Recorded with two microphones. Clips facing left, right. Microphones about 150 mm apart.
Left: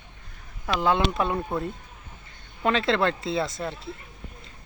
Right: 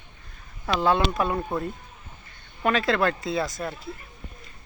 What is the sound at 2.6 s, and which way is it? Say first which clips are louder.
Speech: even; 25° left (ahead or behind).